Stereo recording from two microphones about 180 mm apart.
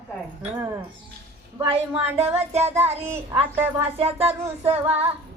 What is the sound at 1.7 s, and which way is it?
Speech, 35° right (ahead or behind).